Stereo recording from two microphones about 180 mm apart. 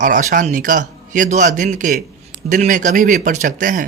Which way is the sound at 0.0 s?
45° right (ahead or behind).